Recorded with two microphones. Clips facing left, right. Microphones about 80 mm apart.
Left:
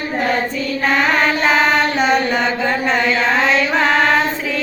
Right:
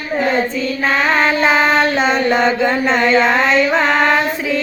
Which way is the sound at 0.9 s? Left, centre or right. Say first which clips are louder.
Right 1 dB; centre.